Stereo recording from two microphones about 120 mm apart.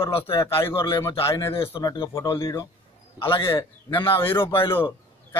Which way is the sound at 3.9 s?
45° left (ahead or behind).